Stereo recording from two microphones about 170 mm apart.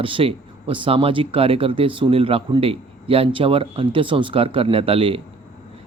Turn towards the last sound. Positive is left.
turn(degrees=-35)  # may be behind; listen again after turning